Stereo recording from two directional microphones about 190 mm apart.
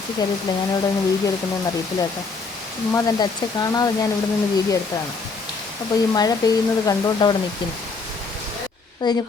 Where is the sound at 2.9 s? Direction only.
20° left (ahead or behind).